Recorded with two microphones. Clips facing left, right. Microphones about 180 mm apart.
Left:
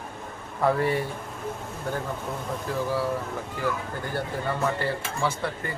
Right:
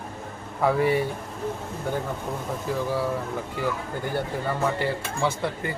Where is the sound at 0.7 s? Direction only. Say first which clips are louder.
Right 2 dB; 10° right (ahead or behind).